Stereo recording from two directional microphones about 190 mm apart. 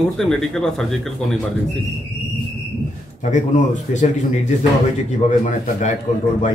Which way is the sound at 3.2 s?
40° left (ahead or behind).